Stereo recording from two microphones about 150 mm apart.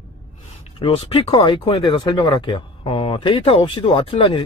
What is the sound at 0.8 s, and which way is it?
Speech, 40° left (ahead or behind).